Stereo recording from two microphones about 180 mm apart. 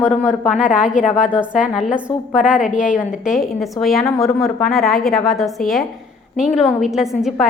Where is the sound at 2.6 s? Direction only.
45° left (ahead or behind).